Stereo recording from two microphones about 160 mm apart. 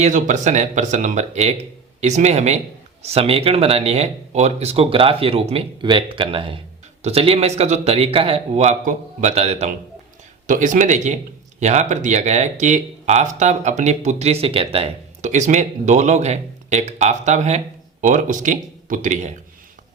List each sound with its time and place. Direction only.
0.0 s speech: 50° right (ahead or behind)
10.4 s speech: 55° right (ahead or behind)